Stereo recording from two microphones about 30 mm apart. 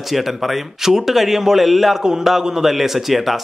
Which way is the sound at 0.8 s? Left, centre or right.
Centre.